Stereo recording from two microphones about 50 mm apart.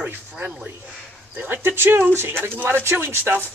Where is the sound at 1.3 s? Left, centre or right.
Right.